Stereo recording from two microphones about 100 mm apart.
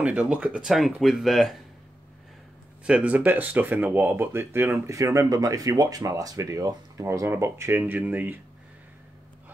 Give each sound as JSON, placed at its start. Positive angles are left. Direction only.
{"t": 0.0, "sound": "speech", "side_deg": -10}
{"t": 2.8, "sound": "speech", "side_deg": -10}